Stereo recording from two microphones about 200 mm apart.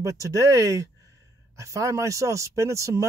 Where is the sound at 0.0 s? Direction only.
15° right (ahead or behind).